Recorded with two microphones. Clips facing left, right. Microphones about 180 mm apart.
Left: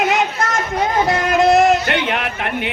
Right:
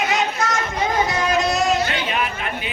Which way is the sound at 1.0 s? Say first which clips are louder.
Left 6 dB; 55° left (ahead or behind).